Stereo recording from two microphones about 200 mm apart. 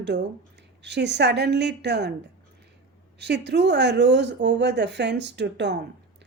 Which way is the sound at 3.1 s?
60° right (ahead or behind).